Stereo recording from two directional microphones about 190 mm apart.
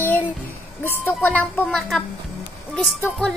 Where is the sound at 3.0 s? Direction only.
5° left (ahead or behind).